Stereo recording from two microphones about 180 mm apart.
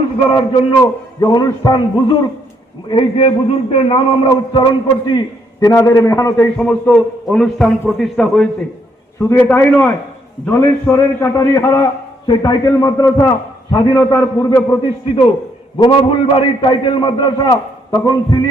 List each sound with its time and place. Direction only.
0.3 s a man's voice: 30° left (ahead or behind)
6.6 s a man's voice: 5° left (ahead or behind)
15.8 s a man's voice: 30° left (ahead or behind)